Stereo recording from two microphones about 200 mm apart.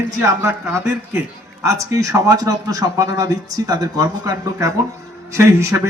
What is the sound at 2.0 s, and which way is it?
Speech, 15° right (ahead or behind).